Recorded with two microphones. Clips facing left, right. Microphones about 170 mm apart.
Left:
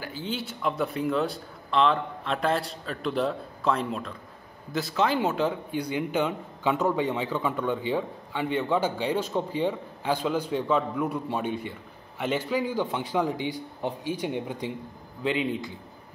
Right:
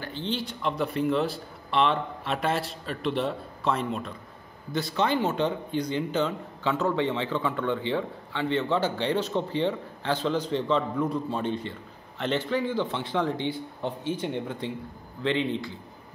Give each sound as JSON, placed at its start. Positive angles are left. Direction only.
{"t": 0.0, "sound": "a man's voice", "side_deg": 5}